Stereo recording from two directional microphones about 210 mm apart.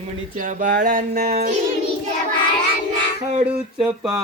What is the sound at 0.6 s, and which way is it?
Speech, 40° right (ahead or behind).